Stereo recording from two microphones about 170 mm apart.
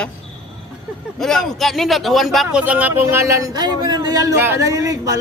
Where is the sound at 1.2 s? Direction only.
Centre (ahead or behind).